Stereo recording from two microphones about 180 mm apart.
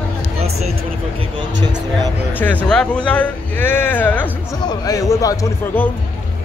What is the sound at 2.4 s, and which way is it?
Speech, 5° left (ahead or behind).